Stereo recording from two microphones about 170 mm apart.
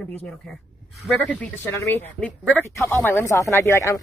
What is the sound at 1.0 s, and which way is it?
Speech, 10° left (ahead or behind).